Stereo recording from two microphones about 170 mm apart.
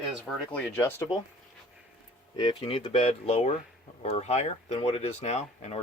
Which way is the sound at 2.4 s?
25° left (ahead or behind).